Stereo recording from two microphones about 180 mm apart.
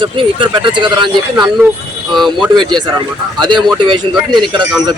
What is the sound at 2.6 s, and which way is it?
Speech, 25° right (ahead or behind).